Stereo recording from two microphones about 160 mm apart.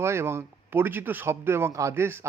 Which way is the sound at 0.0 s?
15° right (ahead or behind).